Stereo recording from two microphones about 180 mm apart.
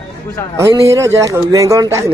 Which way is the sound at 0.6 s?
15° right (ahead or behind).